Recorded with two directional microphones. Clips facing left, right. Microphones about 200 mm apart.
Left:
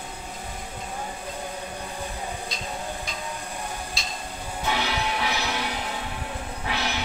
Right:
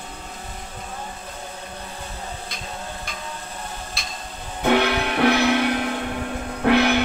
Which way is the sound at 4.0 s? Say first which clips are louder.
Even; 55° right (ahead or behind).